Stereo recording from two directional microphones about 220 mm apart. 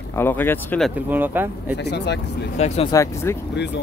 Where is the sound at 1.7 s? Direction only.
50° left (ahead or behind).